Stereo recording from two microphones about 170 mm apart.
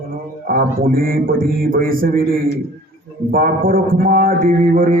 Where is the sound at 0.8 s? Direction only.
60° right (ahead or behind).